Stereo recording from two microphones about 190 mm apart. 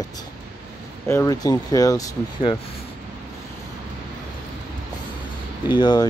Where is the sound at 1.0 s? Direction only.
15° left (ahead or behind).